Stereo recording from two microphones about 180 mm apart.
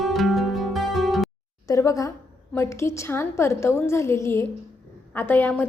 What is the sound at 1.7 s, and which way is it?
A woman's voice, 20° left (ahead or behind).